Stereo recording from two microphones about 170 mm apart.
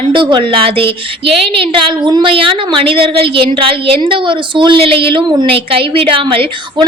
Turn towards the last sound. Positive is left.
turn(degrees=-30)  # may be behind; listen again after turning